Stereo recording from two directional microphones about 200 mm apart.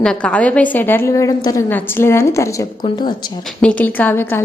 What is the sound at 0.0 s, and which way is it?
A woman's voice, 5° left (ahead or behind).